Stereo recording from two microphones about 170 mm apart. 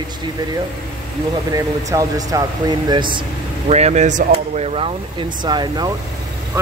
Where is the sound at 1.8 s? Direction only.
20° right (ahead or behind).